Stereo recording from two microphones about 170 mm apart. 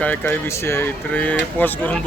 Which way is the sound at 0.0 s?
10° left (ahead or behind).